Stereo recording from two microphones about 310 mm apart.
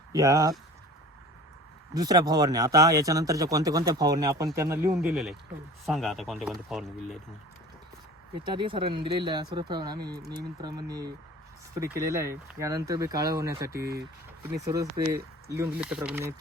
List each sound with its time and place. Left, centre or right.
0.1 s speech: centre
1.9 s speech: centre
8.4 s speech: centre
13.8 s speech: right
14.4 s speech: centre